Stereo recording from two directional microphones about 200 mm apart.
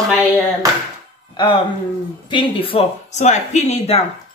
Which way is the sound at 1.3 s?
25° left (ahead or behind).